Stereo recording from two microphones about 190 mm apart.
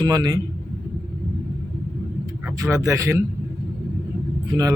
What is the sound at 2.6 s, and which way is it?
Speech, 15° right (ahead or behind).